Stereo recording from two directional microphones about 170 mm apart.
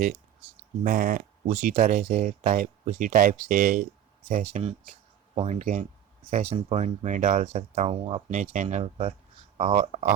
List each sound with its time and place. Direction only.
0.9 s speech: 55° right (ahead or behind)
1.5 s speech: 45° right (ahead or behind)